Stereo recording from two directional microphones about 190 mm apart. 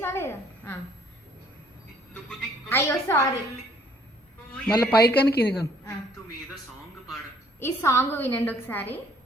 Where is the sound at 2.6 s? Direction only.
15° left (ahead or behind).